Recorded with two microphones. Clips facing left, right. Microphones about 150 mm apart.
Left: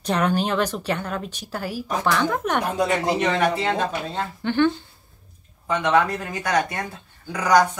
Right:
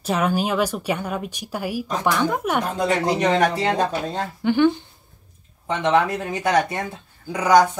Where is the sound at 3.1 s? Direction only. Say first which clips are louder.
Right 2 dB; 40° right (ahead or behind).